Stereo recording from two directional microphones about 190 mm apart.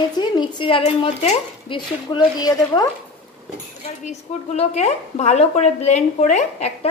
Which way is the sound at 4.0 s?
35° left (ahead or behind).